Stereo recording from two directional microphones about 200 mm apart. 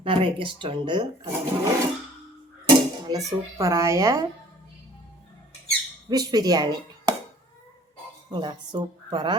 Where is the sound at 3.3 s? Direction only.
15° right (ahead or behind).